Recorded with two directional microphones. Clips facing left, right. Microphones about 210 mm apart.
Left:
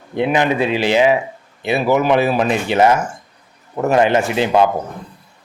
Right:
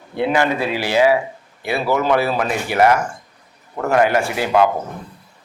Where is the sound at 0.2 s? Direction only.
20° left (ahead or behind).